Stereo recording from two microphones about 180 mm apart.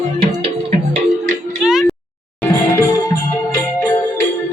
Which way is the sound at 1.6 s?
Centre (ahead or behind).